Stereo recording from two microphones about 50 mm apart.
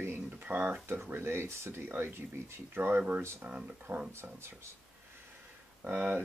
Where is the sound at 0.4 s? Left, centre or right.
Right.